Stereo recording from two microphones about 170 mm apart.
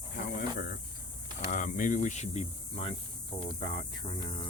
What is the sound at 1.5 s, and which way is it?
Speech, 50° left (ahead or behind).